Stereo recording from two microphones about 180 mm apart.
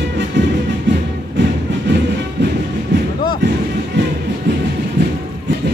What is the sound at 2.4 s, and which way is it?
Train, 75° right (ahead or behind).